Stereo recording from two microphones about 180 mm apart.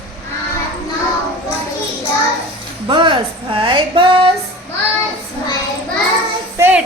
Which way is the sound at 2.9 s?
30° right (ahead or behind).